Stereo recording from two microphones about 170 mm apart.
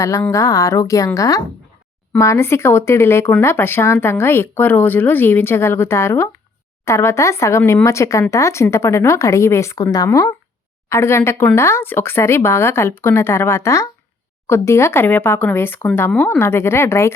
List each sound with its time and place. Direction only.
0.0 s a woman's voice: 20° left (ahead or behind)